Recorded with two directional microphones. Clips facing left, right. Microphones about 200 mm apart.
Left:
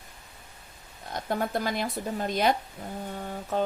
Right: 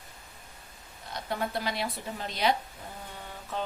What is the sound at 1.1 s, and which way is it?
Speech, 50° left (ahead or behind).